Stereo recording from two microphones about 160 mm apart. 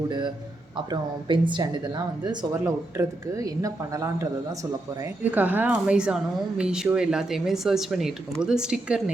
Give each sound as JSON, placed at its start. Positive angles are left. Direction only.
{"t": 0.1, "sound": "speech", "side_deg": -30}